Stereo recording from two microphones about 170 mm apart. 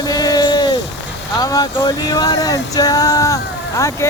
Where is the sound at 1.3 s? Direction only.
20° left (ahead or behind).